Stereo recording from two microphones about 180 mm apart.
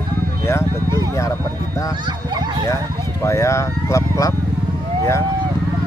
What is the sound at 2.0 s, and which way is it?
Speech, 25° right (ahead or behind).